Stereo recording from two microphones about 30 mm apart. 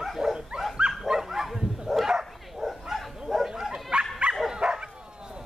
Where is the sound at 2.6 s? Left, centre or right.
Centre.